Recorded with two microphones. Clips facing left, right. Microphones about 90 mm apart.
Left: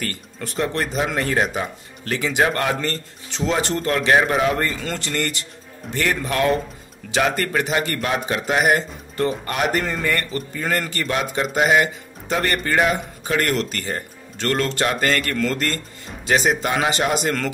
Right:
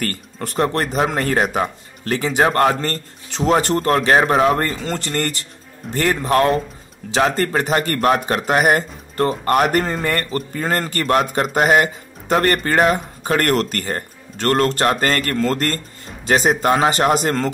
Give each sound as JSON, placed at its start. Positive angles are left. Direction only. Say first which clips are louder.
{"t": 0.0, "sound": "a man's voice", "louder": "right 4 dB", "side_deg": -50}
{"t": 10.6, "sound": "a man's voice", "louder": "right 2 dB", "side_deg": -35}
{"t": 10.9, "sound": "speech", "louder": "right 6 dB", "side_deg": -50}